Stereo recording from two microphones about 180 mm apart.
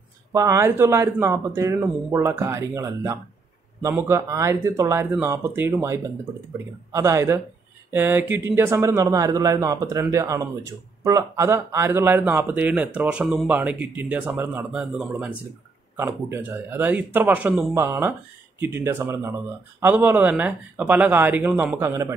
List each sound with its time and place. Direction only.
0.3 s a man's voice: 15° right (ahead or behind)